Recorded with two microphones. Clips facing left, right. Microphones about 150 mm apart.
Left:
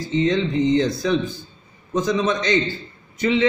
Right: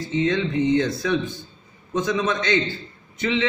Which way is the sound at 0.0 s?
35° left (ahead or behind).